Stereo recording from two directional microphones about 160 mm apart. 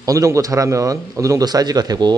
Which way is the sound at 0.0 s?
20° right (ahead or behind).